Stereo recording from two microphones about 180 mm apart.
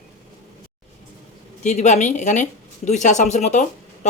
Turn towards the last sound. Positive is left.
turn(degrees=40)  # may be behind; listen again after turning